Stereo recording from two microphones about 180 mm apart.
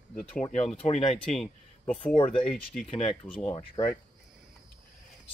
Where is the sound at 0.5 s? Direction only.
40° left (ahead or behind).